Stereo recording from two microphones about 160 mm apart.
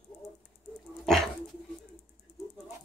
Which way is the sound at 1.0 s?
Centre (ahead or behind).